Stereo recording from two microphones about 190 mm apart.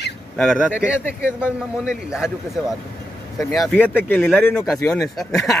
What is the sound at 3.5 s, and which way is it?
A man's voice, centre (ahead or behind).